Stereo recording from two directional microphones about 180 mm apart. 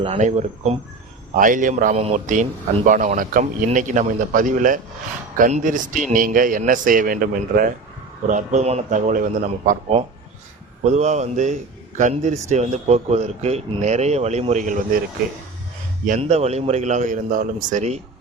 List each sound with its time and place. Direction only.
0.0 s a man's voice: 35° right (ahead or behind)
16.0 s speech: 40° right (ahead or behind)